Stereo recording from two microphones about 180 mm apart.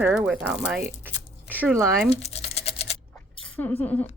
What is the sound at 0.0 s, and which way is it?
Speech, 5° right (ahead or behind).